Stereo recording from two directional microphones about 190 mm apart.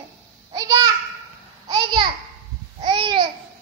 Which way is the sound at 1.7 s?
20° right (ahead or behind).